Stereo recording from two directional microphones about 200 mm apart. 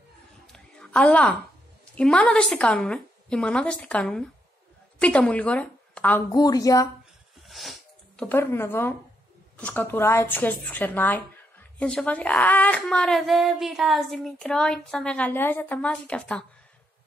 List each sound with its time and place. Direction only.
0.5 s a sound: 5° left (ahead or behind)
2.0 s a woman's voice: 5° left (ahead or behind)
6.3 s a woman's voice: 20° left (ahead or behind)
7.4 s a woman's voice: centre (ahead or behind)